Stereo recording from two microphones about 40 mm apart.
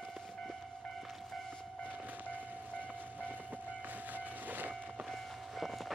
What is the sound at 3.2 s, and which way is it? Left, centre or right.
Train, right.